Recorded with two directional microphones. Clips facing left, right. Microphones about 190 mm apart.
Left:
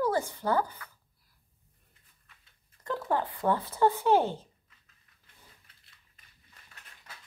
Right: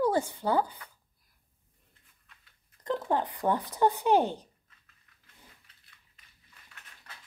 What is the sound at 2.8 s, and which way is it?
Speech, 20° right (ahead or behind).